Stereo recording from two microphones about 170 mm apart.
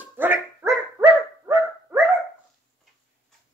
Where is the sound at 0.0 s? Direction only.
10° right (ahead or behind).